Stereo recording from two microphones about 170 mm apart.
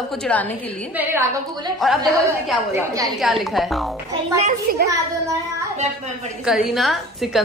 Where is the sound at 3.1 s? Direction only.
Centre (ahead or behind).